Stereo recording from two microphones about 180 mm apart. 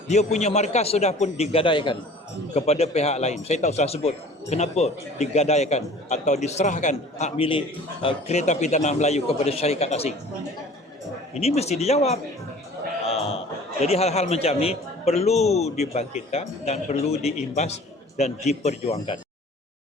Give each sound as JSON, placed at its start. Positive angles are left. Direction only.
{"t": 0.1, "sound": "speech", "side_deg": 40}
{"t": 11.3, "sound": "speech", "side_deg": 35}
{"t": 13.1, "sound": "a sound", "side_deg": 35}
{"t": 13.8, "sound": "speech", "side_deg": 35}